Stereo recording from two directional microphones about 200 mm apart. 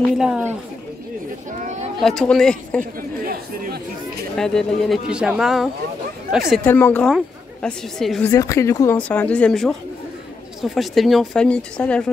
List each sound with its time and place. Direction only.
0.2 s a woman's voice: 5° right (ahead or behind)
1.6 s speech: 40° right (ahead or behind)
2.0 s a woman's voice: centre (ahead or behind)
3.0 s speech: 45° right (ahead or behind)
4.4 s a woman's voice: centre (ahead or behind)
8.3 s a woman's voice: 15° left (ahead or behind)